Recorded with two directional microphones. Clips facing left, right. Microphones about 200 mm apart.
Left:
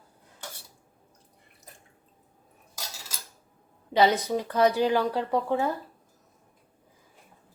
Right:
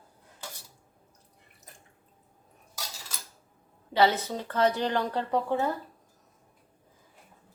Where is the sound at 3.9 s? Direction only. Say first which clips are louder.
Left 2 dB; 15° left (ahead or behind).